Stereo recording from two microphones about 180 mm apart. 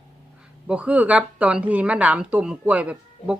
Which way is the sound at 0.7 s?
5° right (ahead or behind).